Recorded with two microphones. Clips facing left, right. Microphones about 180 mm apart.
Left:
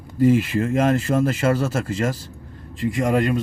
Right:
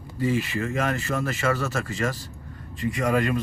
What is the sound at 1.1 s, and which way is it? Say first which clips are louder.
Speech: left 8 dB; 30° left (ahead or behind).